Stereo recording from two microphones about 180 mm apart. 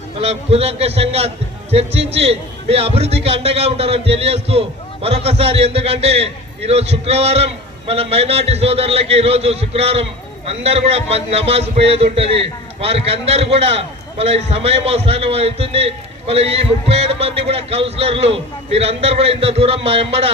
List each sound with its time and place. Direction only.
0.2 s a man's voice: 35° right (ahead or behind)